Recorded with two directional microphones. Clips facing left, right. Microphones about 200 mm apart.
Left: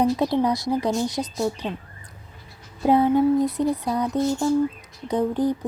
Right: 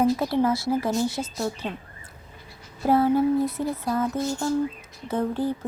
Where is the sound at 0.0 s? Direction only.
20° left (ahead or behind).